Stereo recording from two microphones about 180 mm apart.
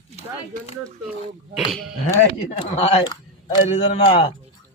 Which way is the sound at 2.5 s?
35° left (ahead or behind).